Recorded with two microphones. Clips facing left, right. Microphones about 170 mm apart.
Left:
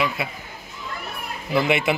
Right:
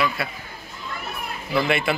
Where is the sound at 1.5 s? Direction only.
20° left (ahead or behind).